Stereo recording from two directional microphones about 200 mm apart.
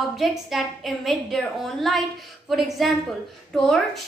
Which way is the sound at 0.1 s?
Centre (ahead or behind).